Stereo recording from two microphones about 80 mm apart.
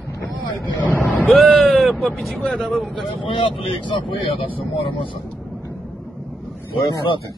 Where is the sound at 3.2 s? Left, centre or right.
Left.